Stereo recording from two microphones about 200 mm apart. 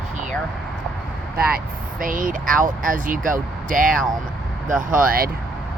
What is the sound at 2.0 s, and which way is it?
Speech, 45° right (ahead or behind).